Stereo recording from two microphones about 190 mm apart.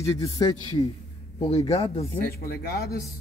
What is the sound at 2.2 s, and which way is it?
Speech, 55° left (ahead or behind).